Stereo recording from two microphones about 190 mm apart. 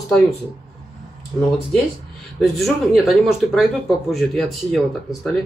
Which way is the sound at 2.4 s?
Centre (ahead or behind).